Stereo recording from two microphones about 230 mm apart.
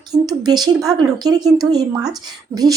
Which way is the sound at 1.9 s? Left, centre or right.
Centre.